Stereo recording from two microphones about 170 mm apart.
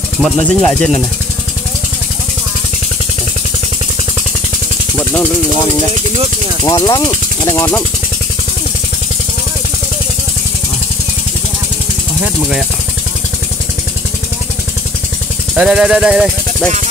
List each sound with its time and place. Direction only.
0.2 s speech: 5° left (ahead or behind)
6.6 s speech: 25° left (ahead or behind)
15.5 s speech: 5° right (ahead or behind)